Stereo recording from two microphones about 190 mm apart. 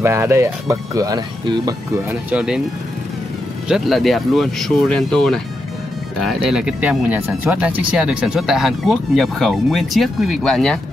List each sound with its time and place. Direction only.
0.0 s speech: 15° right (ahead or behind)
2.0 s speech: 5° right (ahead or behind)
3.6 s speech: centre (ahead or behind)